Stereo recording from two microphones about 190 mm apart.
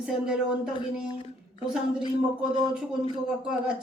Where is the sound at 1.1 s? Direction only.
30° left (ahead or behind).